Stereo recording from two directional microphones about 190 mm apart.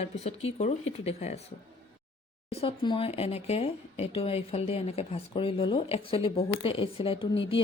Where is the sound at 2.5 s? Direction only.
30° left (ahead or behind).